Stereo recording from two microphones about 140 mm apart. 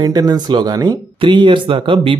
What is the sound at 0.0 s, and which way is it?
Speech, 25° right (ahead or behind).